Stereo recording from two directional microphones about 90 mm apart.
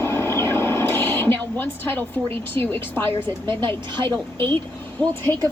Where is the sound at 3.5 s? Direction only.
60° right (ahead or behind).